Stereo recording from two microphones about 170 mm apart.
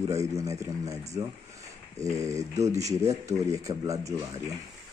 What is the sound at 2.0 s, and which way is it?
Speech, 20° right (ahead or behind).